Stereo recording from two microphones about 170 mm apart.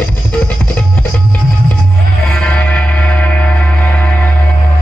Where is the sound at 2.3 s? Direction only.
5° left (ahead or behind).